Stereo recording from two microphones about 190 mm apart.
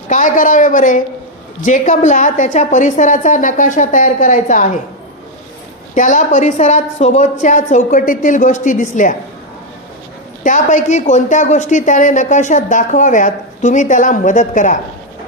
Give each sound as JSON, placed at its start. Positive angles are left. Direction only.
{"t": 0.1, "sound": "a woman's voice", "side_deg": 40}
{"t": 5.9, "sound": "a woman's voice", "side_deg": 40}
{"t": 10.4, "sound": "a woman's voice", "side_deg": 40}